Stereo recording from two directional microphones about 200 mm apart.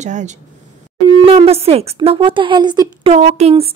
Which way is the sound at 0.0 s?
35° right (ahead or behind).